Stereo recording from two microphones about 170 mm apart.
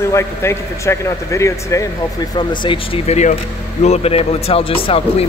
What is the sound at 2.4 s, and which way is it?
Speech, 25° left (ahead or behind).